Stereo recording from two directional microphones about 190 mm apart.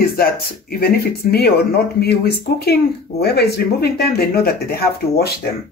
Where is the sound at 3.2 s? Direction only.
55° left (ahead or behind).